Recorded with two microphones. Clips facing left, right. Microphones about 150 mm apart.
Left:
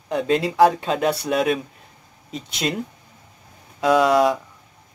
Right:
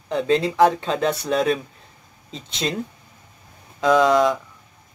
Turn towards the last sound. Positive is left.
turn(degrees=10)  # may be behind; listen again after turning